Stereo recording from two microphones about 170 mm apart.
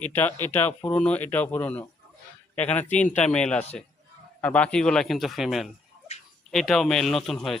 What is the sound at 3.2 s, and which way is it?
A man's voice, 5° left (ahead or behind).